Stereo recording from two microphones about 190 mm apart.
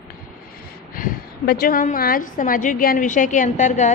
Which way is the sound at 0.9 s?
50° left (ahead or behind).